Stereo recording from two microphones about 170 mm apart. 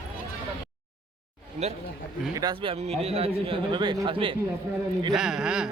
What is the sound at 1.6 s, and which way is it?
Speech, 40° right (ahead or behind).